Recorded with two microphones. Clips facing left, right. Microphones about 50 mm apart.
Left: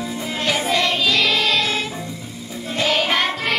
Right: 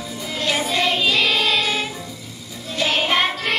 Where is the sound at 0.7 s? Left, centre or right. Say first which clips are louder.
Right 2 dB; centre.